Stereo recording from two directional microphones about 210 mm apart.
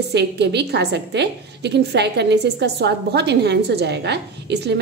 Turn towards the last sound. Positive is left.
turn(degrees=-55)  # may be behind; listen again after turning